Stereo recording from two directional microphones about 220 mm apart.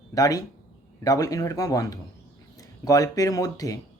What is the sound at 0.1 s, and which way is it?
Speech, 15° left (ahead or behind).